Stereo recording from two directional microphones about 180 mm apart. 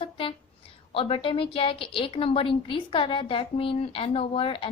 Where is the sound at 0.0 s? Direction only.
30° left (ahead or behind).